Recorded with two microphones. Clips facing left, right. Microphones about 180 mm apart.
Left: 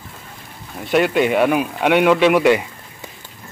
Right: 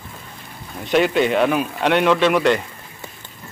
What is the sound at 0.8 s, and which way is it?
Speech, 5° left (ahead or behind).